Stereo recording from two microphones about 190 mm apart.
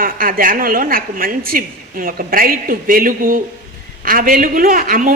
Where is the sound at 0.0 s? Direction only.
50° right (ahead or behind).